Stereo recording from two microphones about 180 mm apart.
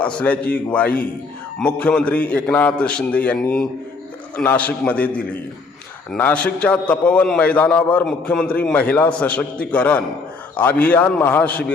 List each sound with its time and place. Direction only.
0.0 s a man's voice: 5° left (ahead or behind)